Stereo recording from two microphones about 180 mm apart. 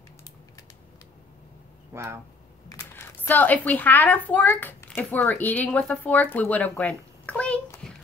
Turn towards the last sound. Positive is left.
turn(degrees=5)  # may be behind; listen again after turning